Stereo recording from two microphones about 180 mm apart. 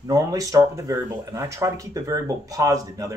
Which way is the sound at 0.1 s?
20° right (ahead or behind).